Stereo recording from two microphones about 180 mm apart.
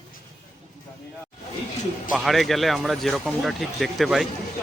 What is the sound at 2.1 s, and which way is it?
Speech, centre (ahead or behind).